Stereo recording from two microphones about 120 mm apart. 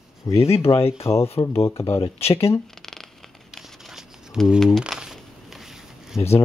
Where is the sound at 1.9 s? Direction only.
50° left (ahead or behind).